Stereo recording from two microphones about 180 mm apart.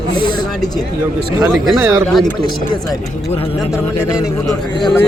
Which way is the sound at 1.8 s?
15° right (ahead or behind).